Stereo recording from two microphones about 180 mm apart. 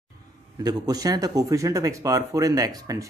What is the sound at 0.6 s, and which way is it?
Speech, 20° right (ahead or behind).